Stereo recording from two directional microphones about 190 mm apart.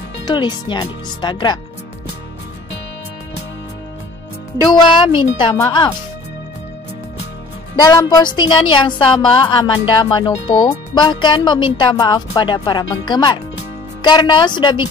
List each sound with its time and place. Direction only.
0.2 s speech: 25° left (ahead or behind)
4.6 s speech: 25° left (ahead or behind)
7.8 s speech: 20° left (ahead or behind)